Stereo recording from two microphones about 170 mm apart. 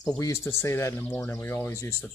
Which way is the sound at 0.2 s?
15° left (ahead or behind).